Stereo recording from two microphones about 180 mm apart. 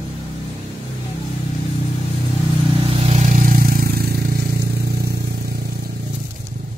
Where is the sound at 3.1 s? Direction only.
40° right (ahead or behind); by 5.1 s 60° right (ahead or behind).